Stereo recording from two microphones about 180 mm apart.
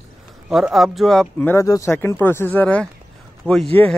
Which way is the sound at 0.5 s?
Centre (ahead or behind).